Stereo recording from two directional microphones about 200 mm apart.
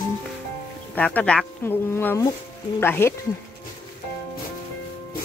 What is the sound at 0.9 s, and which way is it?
Speech, 10° left (ahead or behind).